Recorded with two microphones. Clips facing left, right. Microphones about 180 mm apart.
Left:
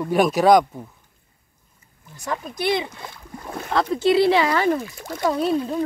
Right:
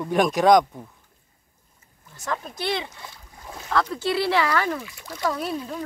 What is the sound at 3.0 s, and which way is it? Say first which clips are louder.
Splash: left 6 dB; 65° left (ahead or behind).